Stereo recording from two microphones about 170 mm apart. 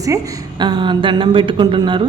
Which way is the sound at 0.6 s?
25° right (ahead or behind).